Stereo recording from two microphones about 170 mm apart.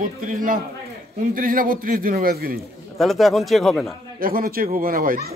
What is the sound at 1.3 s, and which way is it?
A child's voice, 55° right (ahead or behind).